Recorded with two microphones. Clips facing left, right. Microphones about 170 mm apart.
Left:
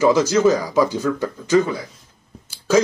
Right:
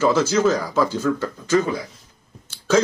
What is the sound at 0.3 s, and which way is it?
A man's voice, 15° left (ahead or behind).